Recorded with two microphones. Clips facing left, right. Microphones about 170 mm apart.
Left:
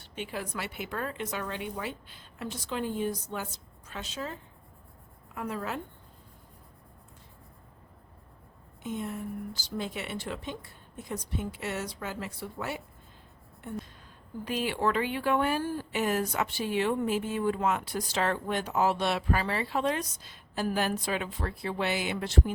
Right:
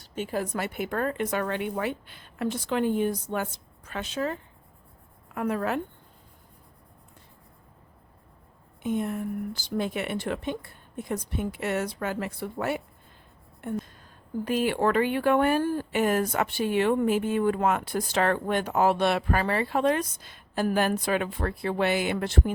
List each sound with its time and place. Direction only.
0.0 s speech: 45° right (ahead or behind); by 5.8 s 60° right (ahead or behind)
8.8 s speech: 55° right (ahead or behind)
14.4 s speech: 50° right (ahead or behind)